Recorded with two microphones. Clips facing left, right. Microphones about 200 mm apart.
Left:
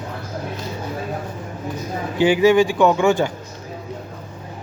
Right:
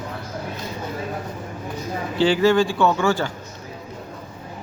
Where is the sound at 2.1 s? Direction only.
15° left (ahead or behind).